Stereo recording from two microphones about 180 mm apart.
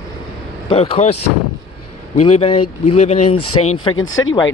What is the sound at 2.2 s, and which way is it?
Speech, 35° left (ahead or behind).